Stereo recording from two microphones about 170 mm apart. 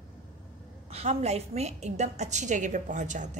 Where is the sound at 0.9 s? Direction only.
40° right (ahead or behind).